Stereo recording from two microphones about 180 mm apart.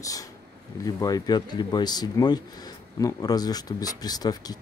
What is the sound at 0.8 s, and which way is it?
Speech, 20° left (ahead or behind).